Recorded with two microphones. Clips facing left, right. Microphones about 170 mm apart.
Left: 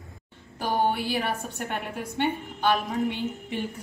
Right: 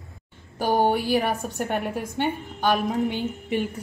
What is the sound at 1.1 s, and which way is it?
A woman's voice, 45° right (ahead or behind).